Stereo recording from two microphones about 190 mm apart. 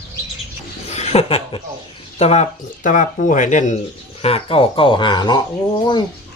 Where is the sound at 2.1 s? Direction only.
35° left (ahead or behind).